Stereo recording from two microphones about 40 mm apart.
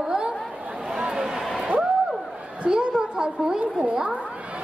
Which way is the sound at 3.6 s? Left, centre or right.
Right.